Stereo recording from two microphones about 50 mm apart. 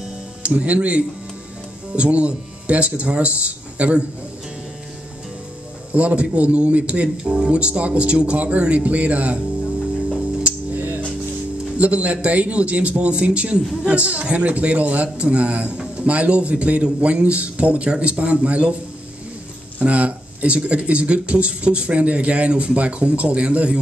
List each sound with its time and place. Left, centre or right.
0.4 s a man's voice: right
5.9 s a man's voice: right
11.7 s a man's voice: right
19.8 s a man's voice: right